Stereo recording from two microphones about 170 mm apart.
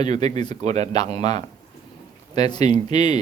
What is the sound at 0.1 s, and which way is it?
Speech, 40° right (ahead or behind).